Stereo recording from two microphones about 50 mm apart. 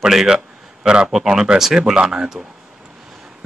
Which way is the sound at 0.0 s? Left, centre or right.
Centre.